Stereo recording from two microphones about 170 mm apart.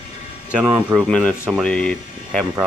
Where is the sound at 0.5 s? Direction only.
10° right (ahead or behind).